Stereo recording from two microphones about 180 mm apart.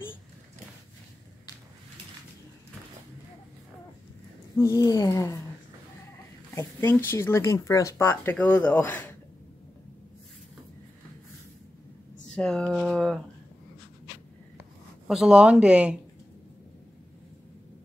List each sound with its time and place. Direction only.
4.6 s speech: 20° left (ahead or behind)
6.5 s speech: 15° left (ahead or behind)
12.4 s speech: 5° left (ahead or behind)
15.0 s speech: 5° right (ahead or behind)